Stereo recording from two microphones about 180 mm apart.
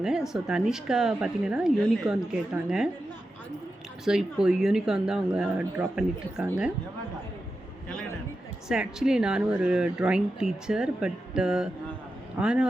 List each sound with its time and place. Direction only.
0.0 s speech: 5° right (ahead or behind)
4.0 s speech: 5° right (ahead or behind)
8.6 s speech: 5° right (ahead or behind)